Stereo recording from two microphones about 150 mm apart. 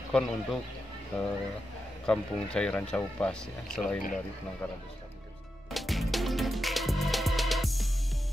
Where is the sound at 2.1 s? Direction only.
5° left (ahead or behind).